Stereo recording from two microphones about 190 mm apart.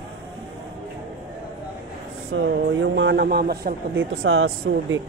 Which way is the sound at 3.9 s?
90° right.